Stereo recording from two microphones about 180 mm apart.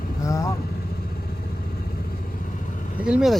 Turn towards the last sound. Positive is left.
turn(degrees=-5)  # may be behind; listen again after turning